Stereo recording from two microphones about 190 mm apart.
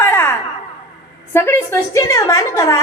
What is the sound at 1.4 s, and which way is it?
A woman's voice, 10° left (ahead or behind).